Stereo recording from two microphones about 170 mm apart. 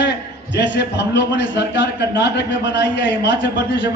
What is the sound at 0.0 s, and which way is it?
A man's voice, 90° left.